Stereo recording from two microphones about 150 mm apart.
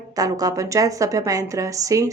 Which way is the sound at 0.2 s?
25° right (ahead or behind).